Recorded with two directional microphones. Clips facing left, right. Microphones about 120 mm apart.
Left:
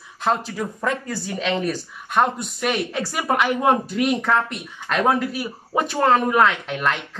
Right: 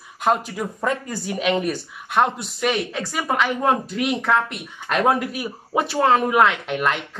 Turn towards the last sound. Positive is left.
turn(degrees=-5)  # may be behind; listen again after turning